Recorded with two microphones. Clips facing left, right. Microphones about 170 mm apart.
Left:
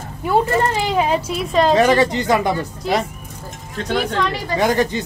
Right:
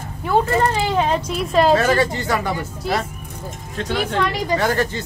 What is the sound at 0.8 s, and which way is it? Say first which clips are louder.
Speech: left 1 dB; 10° left (ahead or behind).